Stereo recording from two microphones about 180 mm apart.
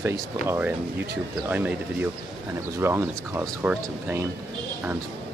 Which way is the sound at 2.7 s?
15° right (ahead or behind).